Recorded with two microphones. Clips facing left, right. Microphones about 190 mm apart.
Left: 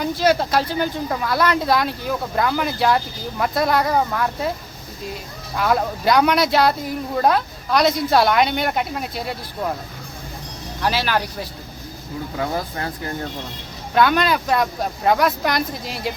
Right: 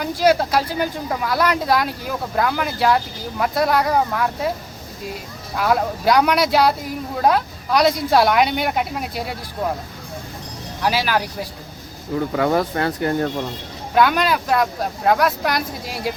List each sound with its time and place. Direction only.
0.0 s speech: 10° right (ahead or behind)
5.5 s speech: 5° right (ahead or behind)
10.8 s speech: 5° right (ahead or behind)
12.4 s speech: 75° right (ahead or behind)
13.9 s speech: 5° right (ahead or behind)